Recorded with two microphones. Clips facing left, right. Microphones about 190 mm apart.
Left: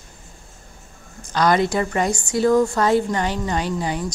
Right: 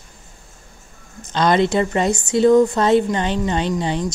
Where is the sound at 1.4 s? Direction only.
25° right (ahead or behind).